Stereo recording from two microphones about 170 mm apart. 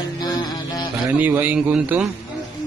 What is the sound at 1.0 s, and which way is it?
A man's voice, 10° right (ahead or behind).